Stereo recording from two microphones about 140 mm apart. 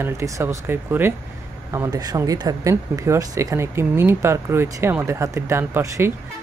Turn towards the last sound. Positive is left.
turn(degrees=-15)  # may be behind; listen again after turning